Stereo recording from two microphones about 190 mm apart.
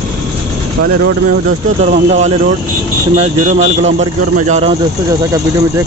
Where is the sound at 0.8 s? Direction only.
55° right (ahead or behind).